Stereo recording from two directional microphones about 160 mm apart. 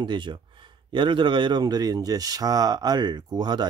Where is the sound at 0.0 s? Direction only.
30° right (ahead or behind).